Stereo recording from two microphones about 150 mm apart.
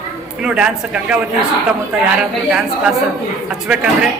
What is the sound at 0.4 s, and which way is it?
A woman's voice, 5° right (ahead or behind).